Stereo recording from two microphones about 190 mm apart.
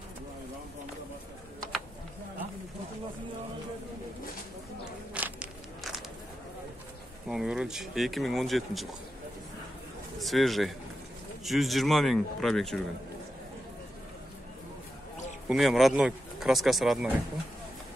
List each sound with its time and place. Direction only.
5.1 s walk: 5° right (ahead or behind)
7.2 s speech: 5° right (ahead or behind)
10.1 s a man's voice: centre (ahead or behind)
15.4 s speech: centre (ahead or behind)